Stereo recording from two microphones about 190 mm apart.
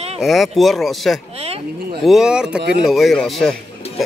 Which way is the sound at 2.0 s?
5° right (ahead or behind).